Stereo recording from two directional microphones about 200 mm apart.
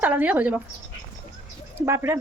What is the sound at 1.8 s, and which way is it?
Speech, 10° right (ahead or behind).